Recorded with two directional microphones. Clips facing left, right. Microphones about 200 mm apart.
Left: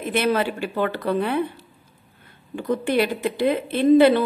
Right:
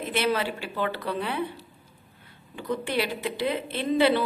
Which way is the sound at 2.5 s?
50° left (ahead or behind).